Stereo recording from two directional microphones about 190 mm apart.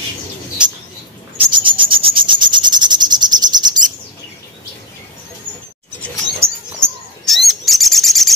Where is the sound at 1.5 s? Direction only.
25° right (ahead or behind).